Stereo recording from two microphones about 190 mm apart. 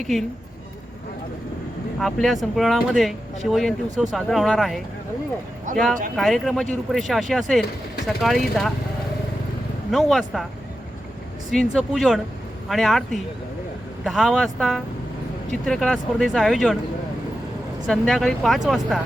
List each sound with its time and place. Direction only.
2.0 s speech: centre (ahead or behind)
5.7 s speech: 40° right (ahead or behind)
6.1 s speech: centre (ahead or behind)
9.9 s speech: centre (ahead or behind)
11.5 s speech: centre (ahead or behind)
17.8 s speech: centre (ahead or behind)